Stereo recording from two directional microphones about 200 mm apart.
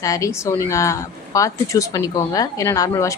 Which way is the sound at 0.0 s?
15° left (ahead or behind).